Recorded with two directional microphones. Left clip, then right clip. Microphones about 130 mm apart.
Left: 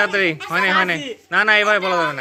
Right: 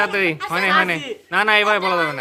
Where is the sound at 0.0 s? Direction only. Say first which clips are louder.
Left 1 dB; 20° left (ahead or behind).